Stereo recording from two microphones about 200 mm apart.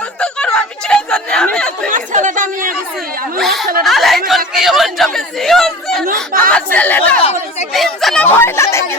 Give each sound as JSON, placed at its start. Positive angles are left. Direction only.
{"t": 0.2, "sound": "chatter", "side_deg": 5}
{"t": 1.9, "sound": "chatter", "side_deg": -40}
{"t": 3.3, "sound": "chatter", "side_deg": 0}
{"t": 7.7, "sound": "a sound", "side_deg": 0}